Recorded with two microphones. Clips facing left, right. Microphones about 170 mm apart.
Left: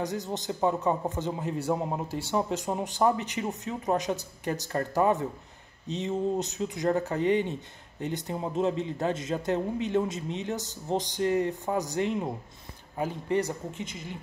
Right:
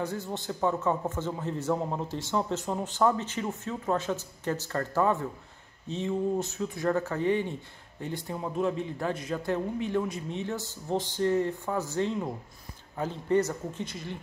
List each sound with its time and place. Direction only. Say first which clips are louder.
0.1 s a man's voice: left 2 dB; 20° left (ahead or behind)